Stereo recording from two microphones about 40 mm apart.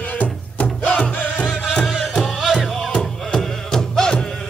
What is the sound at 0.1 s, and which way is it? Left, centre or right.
Music, left.